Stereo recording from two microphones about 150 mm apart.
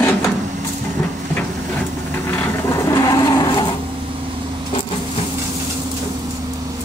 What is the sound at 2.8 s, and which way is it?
Vehicle, 20° left (ahead or behind).